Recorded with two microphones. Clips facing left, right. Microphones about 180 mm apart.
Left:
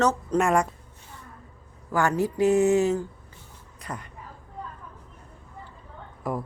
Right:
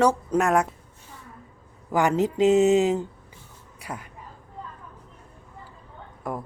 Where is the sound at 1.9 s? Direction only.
20° right (ahead or behind).